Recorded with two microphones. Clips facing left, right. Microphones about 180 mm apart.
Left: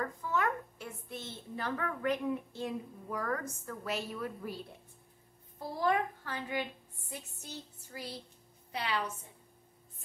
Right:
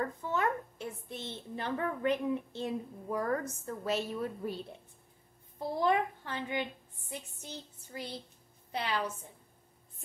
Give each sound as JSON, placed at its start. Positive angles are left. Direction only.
{"t": 0.0, "sound": "a woman's voice", "side_deg": -25}
{"t": 5.8, "sound": "a woman's voice", "side_deg": -25}